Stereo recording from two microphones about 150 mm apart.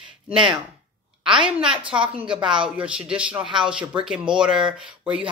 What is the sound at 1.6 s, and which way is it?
Speech, 5° right (ahead or behind).